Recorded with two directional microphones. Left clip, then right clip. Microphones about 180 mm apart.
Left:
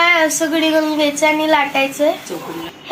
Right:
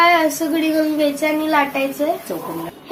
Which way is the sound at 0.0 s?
20° left (ahead or behind).